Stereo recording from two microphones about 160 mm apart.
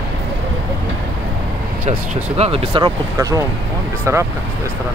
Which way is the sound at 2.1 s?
40° right (ahead or behind).